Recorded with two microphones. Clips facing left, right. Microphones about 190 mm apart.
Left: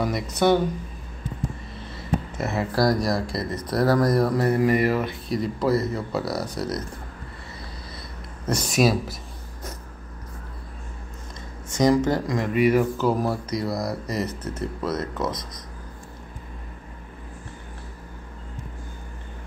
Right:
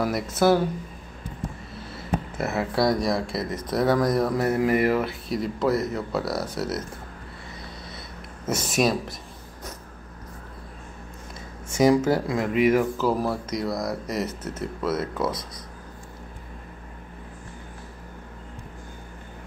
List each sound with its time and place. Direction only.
0.0 s speech: 5° right (ahead or behind)
2.3 s speech: centre (ahead or behind)
8.5 s speech: 5° right (ahead or behind)
11.7 s speech: 5° right (ahead or behind)